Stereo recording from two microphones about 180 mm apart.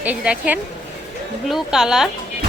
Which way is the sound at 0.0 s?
10° right (ahead or behind).